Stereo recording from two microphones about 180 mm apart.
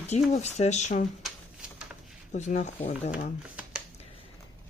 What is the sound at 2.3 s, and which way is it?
Speech, 40° left (ahead or behind).